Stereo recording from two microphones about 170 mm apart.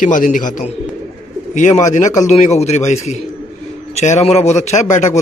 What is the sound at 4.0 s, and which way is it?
A man's voice, 40° left (ahead or behind).